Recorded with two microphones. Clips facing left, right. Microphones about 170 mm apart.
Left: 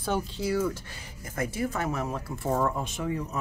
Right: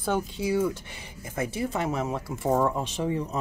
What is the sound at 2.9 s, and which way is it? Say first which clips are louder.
Speech: right 3 dB; 25° right (ahead or behind).